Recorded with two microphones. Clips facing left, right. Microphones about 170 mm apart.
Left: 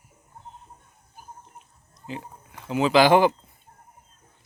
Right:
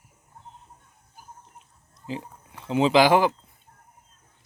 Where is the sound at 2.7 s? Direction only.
25° right (ahead or behind).